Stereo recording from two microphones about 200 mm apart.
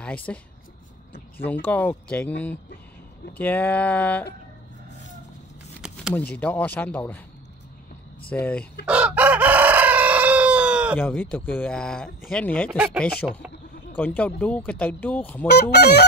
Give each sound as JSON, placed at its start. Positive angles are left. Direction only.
{"t": 0.0, "sound": "speech", "side_deg": 5}
{"t": 1.4, "sound": "speech", "side_deg": 10}
{"t": 5.8, "sound": "a sound", "side_deg": -5}
{"t": 6.1, "sound": "speech", "side_deg": 10}
{"t": 8.3, "sound": "speech", "side_deg": 5}
{"t": 8.8, "sound": "chicken", "side_deg": -5}
{"t": 11.0, "sound": "speech", "side_deg": 10}
{"t": 12.7, "sound": "speech", "side_deg": -5}
{"t": 13.2, "sound": "speech", "side_deg": 10}
{"t": 15.4, "sound": "fowl", "side_deg": 55}